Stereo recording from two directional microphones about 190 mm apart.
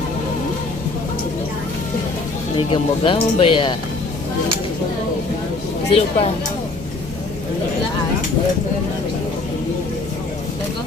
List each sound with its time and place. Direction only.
2.6 s speech: 30° left (ahead or behind)
5.9 s speech: 35° left (ahead or behind)